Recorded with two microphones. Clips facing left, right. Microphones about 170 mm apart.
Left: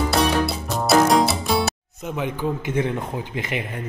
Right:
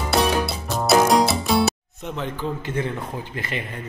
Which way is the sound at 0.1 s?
Centre (ahead or behind).